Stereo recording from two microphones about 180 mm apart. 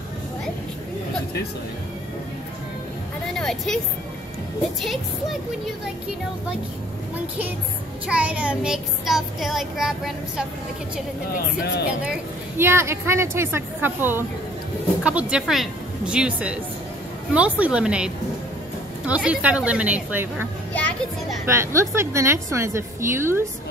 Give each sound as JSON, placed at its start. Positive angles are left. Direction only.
{"t": 3.3, "sound": "child singing", "side_deg": 5}
{"t": 8.1, "sound": "child singing", "side_deg": -5}
{"t": 11.3, "sound": "speech", "side_deg": 65}
{"t": 12.5, "sound": "a woman's voice", "side_deg": -15}
{"t": 15.0, "sound": "child singing", "side_deg": -5}
{"t": 17.3, "sound": "a woman's voice", "side_deg": -5}
{"t": 21.5, "sound": "a woman's voice", "side_deg": -15}